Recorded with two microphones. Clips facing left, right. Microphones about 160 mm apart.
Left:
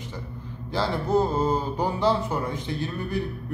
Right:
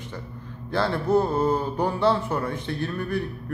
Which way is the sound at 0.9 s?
10° left (ahead or behind).